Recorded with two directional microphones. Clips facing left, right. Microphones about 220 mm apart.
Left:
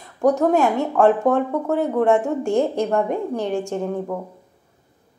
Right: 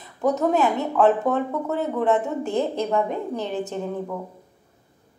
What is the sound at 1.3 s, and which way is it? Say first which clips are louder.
Speech: left 4 dB; 50° left (ahead or behind).